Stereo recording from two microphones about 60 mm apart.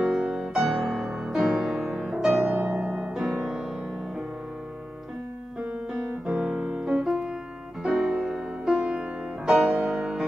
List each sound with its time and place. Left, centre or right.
0.0 s music: centre
2.5 s music: right
6.2 s music: centre
9.5 s music: centre